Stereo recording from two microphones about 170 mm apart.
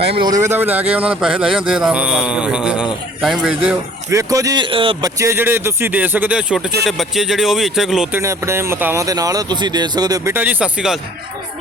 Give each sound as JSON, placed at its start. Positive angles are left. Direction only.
{"t": 0.3, "sound": "speech", "side_deg": -15}
{"t": 4.1, "sound": "speech", "side_deg": -20}
{"t": 5.2, "sound": "speech", "side_deg": -15}
{"t": 8.2, "sound": "speech", "side_deg": -15}